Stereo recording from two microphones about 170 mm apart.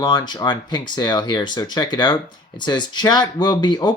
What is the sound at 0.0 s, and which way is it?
Speech, 25° left (ahead or behind).